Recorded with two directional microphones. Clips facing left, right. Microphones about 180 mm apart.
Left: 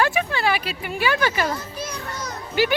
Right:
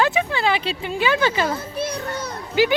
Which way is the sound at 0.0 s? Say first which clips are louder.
Right 1 dB; 20° right (ahead or behind).